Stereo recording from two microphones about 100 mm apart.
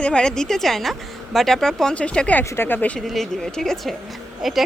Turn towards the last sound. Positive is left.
turn(degrees=0)  # may be behind; listen again after turning